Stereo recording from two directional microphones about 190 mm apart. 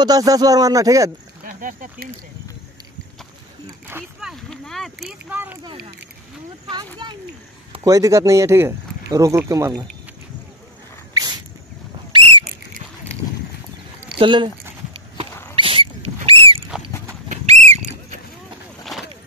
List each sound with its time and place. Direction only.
0.0 s speech: 20° right (ahead or behind)
1.4 s speech: 45° right (ahead or behind)
3.6 s speech: 10° right (ahead or behind)
6.7 s speech: 25° right (ahead or behind)
11.1 s a sound: 20° right (ahead or behind)
14.1 s speech: 25° right (ahead or behind)
15.5 s rodents: 30° right (ahead or behind)
17.3 s a sound: 35° right (ahead or behind)